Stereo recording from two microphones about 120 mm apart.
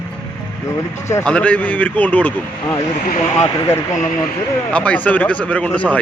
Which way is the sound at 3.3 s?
25° left (ahead or behind).